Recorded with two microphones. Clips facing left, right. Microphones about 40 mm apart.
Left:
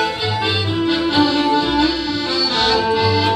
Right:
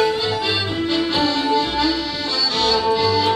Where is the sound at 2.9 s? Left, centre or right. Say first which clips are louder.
Left 1 dB; left.